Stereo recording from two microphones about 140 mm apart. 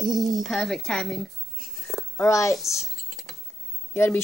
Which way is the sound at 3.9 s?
15° left (ahead or behind).